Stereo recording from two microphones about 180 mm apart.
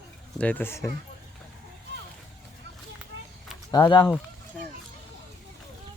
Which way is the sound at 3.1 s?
75° right (ahead or behind).